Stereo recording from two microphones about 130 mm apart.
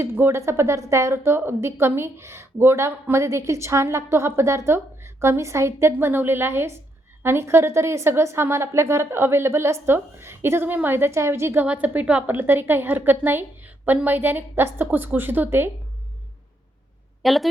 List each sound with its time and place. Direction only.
0.0 s a woman's voice: 20° right (ahead or behind)
17.2 s a woman's voice: centre (ahead or behind)